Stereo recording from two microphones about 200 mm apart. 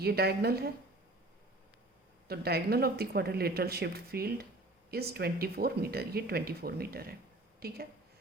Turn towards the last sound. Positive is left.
turn(degrees=-50)  # may be behind; listen again after turning